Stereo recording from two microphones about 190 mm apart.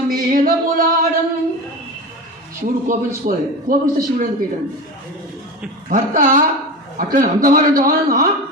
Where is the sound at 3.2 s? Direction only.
50° right (ahead or behind).